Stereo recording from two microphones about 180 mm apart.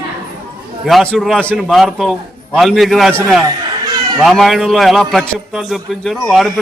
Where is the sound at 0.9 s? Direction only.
Centre (ahead or behind).